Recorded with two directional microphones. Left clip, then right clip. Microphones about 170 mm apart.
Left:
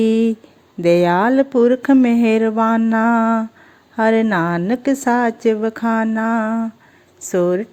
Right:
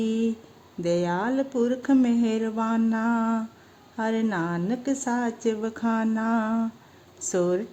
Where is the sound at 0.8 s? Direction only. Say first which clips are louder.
Left 12 dB; 30° left (ahead or behind).